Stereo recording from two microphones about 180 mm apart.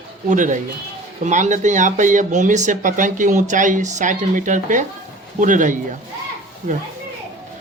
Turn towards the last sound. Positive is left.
turn(degrees=-40)  # may be behind; listen again after turning